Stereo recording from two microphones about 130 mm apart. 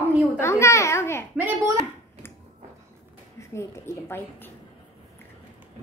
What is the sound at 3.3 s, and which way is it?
A woman's voice, 20° left (ahead or behind).